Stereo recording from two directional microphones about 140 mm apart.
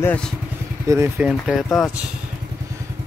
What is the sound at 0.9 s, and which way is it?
Speech, 25° right (ahead or behind).